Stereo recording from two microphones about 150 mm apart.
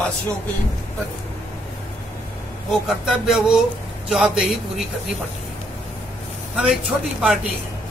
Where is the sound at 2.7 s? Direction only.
5° right (ahead or behind).